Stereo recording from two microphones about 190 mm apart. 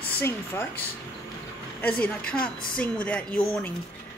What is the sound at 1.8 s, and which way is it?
A woman's voice, 5° left (ahead or behind).